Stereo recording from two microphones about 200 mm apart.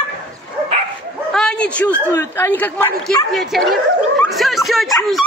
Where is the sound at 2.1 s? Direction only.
15° left (ahead or behind); by 3.6 s centre (ahead or behind).